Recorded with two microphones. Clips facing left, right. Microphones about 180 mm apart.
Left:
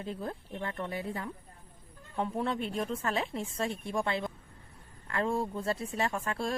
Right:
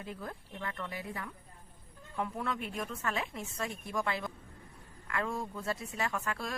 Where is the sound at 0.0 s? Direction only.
30° left (ahead or behind).